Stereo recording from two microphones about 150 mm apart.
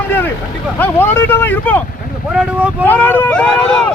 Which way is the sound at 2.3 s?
5° right (ahead or behind).